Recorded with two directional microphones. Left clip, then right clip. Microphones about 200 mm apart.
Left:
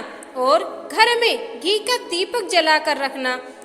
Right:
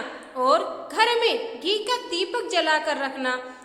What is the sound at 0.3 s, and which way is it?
A woman's voice, 25° left (ahead or behind).